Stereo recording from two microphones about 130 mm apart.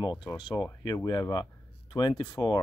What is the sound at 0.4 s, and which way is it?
Speech, 35° left (ahead or behind).